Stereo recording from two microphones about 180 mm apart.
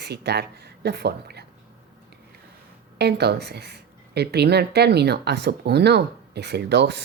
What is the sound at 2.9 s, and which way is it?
Speech, 65° right (ahead or behind).